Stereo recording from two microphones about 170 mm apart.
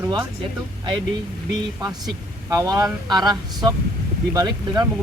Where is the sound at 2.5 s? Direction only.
20° right (ahead or behind).